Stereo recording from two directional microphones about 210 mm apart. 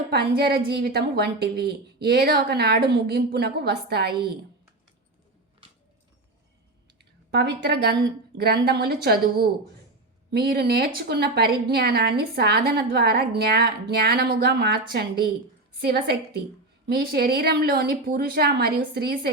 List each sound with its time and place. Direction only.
0.1 s a woman's voice: 50° right (ahead or behind)
7.0 s a woman's voice: 50° right (ahead or behind)